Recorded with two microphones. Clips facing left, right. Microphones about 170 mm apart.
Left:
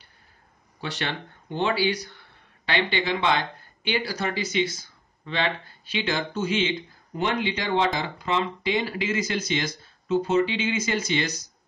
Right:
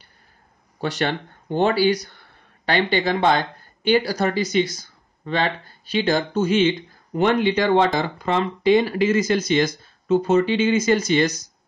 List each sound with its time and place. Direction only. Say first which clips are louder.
0.7 s speech: right 8 dB; 45° right (ahead or behind)